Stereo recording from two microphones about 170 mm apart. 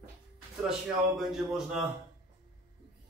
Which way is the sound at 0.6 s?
Centre (ahead or behind).